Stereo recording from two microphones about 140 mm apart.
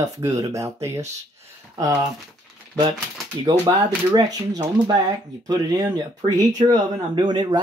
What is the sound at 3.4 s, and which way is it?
Speech, 30° right (ahead or behind).